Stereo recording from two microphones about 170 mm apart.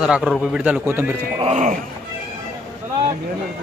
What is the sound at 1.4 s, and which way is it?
Speech, 40° right (ahead or behind).